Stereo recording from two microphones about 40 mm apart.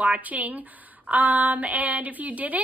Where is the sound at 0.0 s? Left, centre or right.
Right.